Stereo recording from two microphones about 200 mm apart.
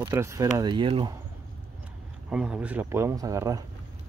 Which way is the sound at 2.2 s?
5° right (ahead or behind).